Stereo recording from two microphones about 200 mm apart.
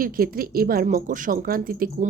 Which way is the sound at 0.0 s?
45° right (ahead or behind).